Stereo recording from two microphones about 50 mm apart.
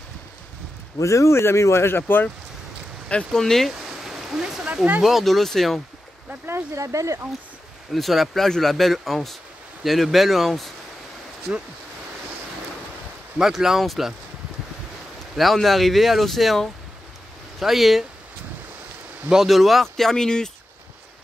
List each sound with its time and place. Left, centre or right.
1.0 s speech: left
3.3 s speech: centre
3.7 s stream: centre
5.0 s speech: centre
6.4 s speech: right
7.9 s speech: centre
11.5 s speech: centre
13.4 s speech: centre
15.3 s speech: centre
19.4 s speech: centre